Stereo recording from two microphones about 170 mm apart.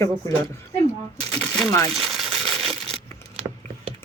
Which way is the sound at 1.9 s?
Centre (ahead or behind).